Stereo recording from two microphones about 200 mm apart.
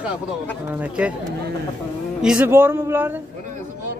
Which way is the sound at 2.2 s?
5° right (ahead or behind).